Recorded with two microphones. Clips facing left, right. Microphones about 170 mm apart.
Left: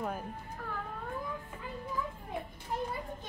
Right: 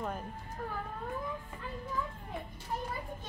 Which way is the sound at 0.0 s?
5° left (ahead or behind).